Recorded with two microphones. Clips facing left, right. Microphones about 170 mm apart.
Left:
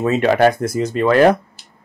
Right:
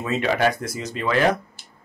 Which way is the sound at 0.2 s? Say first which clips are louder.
Left 6 dB; 50° left (ahead or behind).